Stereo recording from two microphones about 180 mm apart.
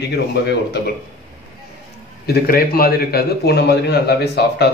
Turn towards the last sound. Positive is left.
turn(degrees=65)  # may be behind; listen again after turning